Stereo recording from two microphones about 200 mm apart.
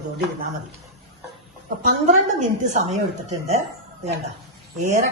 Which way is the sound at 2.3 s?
40° right (ahead or behind).